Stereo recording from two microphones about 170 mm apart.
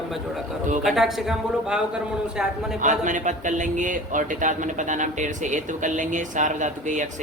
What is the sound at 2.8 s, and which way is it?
A man's voice, 50° right (ahead or behind).